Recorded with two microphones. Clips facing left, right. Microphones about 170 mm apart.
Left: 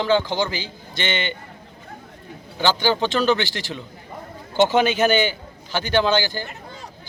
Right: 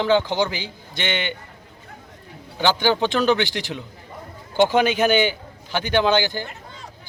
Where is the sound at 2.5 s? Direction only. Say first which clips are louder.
Right 1 dB; 15° right (ahead or behind).